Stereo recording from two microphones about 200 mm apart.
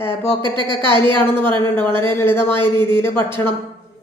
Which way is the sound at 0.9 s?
10° left (ahead or behind).